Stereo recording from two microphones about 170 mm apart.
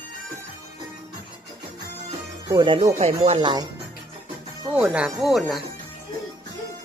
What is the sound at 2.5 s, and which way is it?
Speech, 30° right (ahead or behind).